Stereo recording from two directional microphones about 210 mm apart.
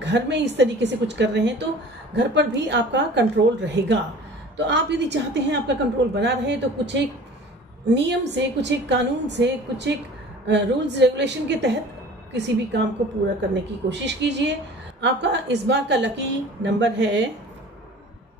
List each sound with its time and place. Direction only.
0.0 s a woman's voice: 55° right (ahead or behind)
13.8 s a woman's voice: 55° right (ahead or behind)